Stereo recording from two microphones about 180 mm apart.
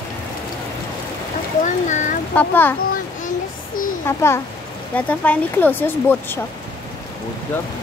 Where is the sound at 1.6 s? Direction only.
45° left (ahead or behind).